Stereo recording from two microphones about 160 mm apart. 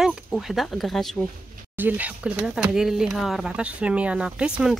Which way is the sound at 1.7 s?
10° right (ahead or behind).